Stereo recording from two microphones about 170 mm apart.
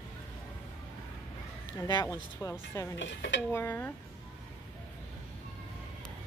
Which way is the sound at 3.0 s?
90° left.